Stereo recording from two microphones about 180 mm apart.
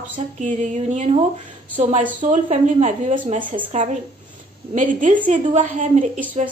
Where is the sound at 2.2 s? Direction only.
45° right (ahead or behind).